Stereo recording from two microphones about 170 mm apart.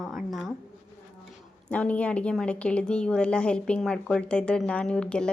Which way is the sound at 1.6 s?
10° left (ahead or behind).